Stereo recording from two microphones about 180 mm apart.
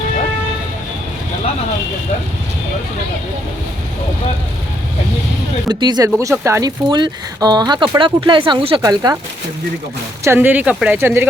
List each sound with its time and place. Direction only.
5.6 s speech: 20° right (ahead or behind)
8.8 s speech: 20° right (ahead or behind)
10.2 s speech: 10° right (ahead or behind)